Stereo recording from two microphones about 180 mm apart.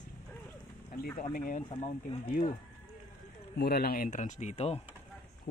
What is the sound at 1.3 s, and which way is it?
Speech, 50° left (ahead or behind).